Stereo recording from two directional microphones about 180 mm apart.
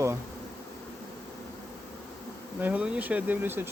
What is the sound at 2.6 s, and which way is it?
Speech, 5° right (ahead or behind).